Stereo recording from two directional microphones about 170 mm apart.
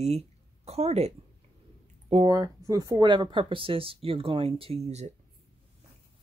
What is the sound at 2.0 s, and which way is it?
Speech, 25° right (ahead or behind).